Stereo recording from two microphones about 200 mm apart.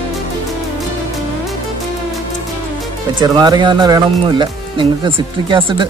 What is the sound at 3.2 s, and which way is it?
Speech, 20° right (ahead or behind).